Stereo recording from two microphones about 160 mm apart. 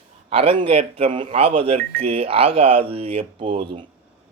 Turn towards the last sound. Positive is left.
turn(degrees=-35)  # may be behind; listen again after turning